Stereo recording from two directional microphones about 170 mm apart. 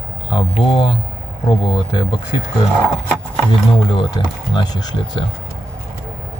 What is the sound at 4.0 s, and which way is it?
Speech, 30° left (ahead or behind).